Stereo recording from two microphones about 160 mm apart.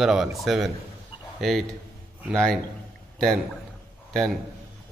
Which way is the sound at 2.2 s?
Centre (ahead or behind).